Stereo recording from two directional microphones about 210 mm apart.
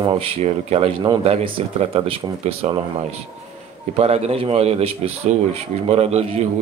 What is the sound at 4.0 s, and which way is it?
A man's voice, 30° right (ahead or behind).